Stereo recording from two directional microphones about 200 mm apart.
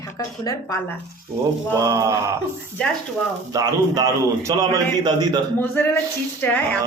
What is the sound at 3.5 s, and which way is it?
A man's voice, 15° right (ahead or behind).